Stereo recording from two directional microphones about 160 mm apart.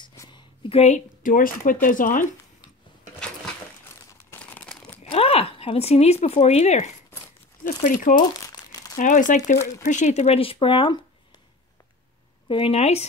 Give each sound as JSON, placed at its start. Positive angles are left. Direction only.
{"t": 0.0, "sound": "a sound", "side_deg": 25}
{"t": 0.7, "sound": "speech", "side_deg": 40}
{"t": 1.2, "sound": "speech", "side_deg": 60}
{"t": 4.3, "sound": "crumpling", "side_deg": 5}
{"t": 5.1, "sound": "speech", "side_deg": 35}
{"t": 7.6, "sound": "speech", "side_deg": 55}
{"t": 12.4, "sound": "speech", "side_deg": 35}